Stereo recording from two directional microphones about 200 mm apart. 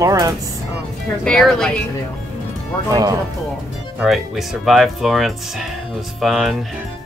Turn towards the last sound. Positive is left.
turn(degrees=0)  # may be behind; listen again after turning